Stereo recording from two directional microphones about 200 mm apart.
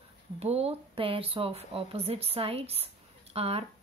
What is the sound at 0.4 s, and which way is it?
Speech, 30° right (ahead or behind).